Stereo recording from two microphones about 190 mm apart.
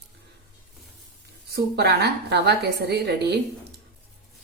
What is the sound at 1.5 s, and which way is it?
A woman's voice, 55° right (ahead or behind).